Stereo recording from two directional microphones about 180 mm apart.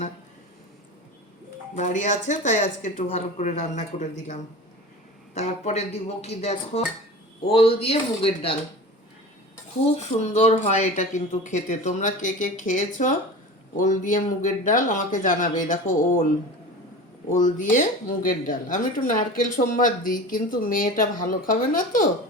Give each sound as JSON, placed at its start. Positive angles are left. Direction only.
{"t": 1.7, "sound": "speech", "side_deg": 45}
{"t": 10.0, "sound": "speech", "side_deg": 40}
{"t": 17.3, "sound": "speech", "side_deg": 45}